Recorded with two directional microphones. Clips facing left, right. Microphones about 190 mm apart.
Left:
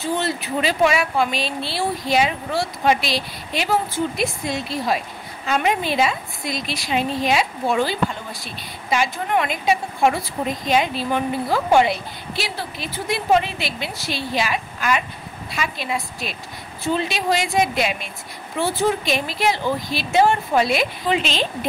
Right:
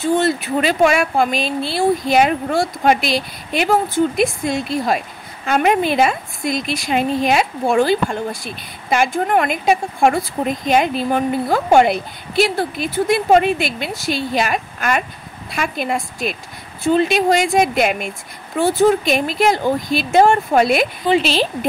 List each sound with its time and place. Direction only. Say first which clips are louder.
0.0 s speech: right 7 dB; 45° right (ahead or behind)